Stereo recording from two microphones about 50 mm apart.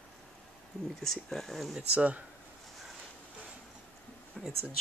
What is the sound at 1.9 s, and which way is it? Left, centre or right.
Speech, right.